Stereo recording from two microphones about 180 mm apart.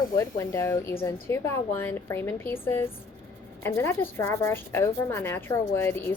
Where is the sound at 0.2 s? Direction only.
15° left (ahead or behind).